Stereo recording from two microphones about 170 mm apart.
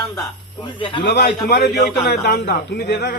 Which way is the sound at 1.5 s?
70° left (ahead or behind).